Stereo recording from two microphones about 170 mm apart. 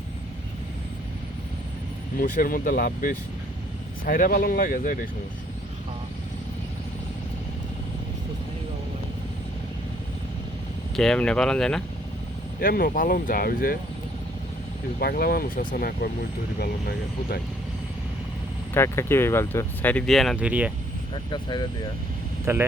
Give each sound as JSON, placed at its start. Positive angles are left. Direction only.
{"t": 2.1, "sound": "speech", "side_deg": 55}
{"t": 10.9, "sound": "speech", "side_deg": 5}
{"t": 12.5, "sound": "speech", "side_deg": 60}
{"t": 14.9, "sound": "speech", "side_deg": 60}
{"t": 18.7, "sound": "speech", "side_deg": 15}
{"t": 21.2, "sound": "speech", "side_deg": 25}
{"t": 22.5, "sound": "speech", "side_deg": -15}